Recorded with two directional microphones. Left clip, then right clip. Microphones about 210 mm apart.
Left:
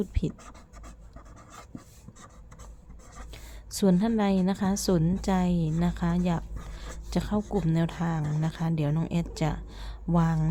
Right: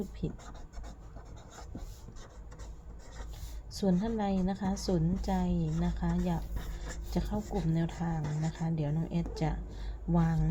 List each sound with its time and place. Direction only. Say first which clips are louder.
0.1 s a woman's voice: left 6 dB; 30° left (ahead or behind)
3.8 s a woman's voice: left 7 dB; 30° left (ahead or behind)